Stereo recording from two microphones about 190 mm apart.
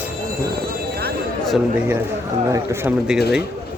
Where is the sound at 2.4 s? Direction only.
15° right (ahead or behind).